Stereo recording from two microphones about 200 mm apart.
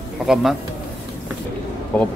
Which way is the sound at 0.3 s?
Centre (ahead or behind).